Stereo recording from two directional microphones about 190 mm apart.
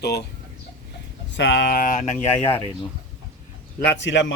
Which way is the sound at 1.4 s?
70° left (ahead or behind).